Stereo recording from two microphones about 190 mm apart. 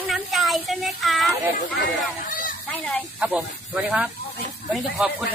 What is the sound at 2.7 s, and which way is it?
Speech, 10° left (ahead or behind).